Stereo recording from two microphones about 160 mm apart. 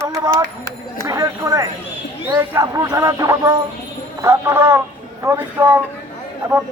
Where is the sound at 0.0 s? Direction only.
20° right (ahead or behind).